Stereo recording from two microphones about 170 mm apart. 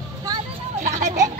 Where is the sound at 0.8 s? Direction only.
45° right (ahead or behind).